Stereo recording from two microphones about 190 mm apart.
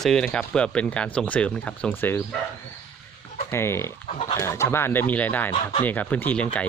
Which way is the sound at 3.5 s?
15° left (ahead or behind).